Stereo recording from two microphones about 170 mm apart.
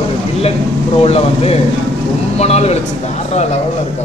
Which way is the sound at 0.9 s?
35° left (ahead or behind).